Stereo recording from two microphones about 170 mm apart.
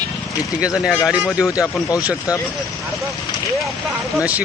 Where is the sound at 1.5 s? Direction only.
20° left (ahead or behind).